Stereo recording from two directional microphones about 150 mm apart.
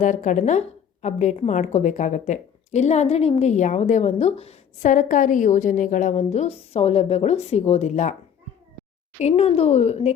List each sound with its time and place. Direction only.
0.0 s a woman's voice: 55° left (ahead or behind)
9.1 s a woman's voice: 45° left (ahead or behind)